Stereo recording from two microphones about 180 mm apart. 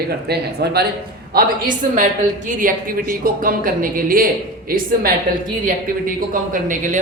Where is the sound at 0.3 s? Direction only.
65° right (ahead or behind).